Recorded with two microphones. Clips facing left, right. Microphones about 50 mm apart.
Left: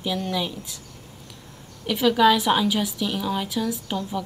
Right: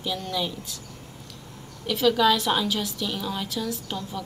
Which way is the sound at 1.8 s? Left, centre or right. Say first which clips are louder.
Left 3 dB; centre.